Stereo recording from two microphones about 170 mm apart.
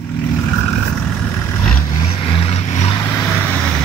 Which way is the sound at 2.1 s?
35° left (ahead or behind).